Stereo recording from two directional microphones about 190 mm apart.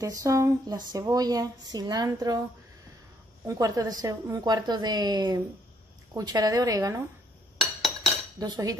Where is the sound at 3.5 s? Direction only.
15° right (ahead or behind).